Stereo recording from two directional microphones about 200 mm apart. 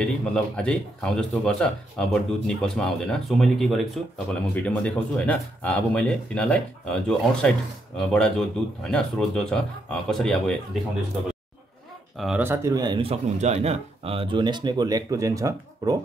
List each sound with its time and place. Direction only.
0.0 s speech: 5° left (ahead or behind)
12.2 s speech: 5° right (ahead or behind)